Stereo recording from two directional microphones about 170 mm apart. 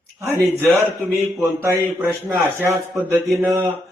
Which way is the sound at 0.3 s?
15° right (ahead or behind).